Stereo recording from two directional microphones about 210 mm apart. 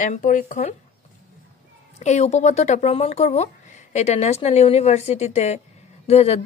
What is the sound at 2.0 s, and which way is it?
Speech, 35° left (ahead or behind).